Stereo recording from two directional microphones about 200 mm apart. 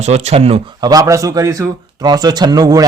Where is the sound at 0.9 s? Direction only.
15° right (ahead or behind).